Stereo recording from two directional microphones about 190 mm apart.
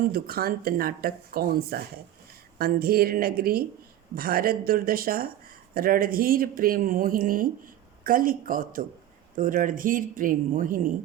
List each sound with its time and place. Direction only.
0.0 s speech: 50° right (ahead or behind)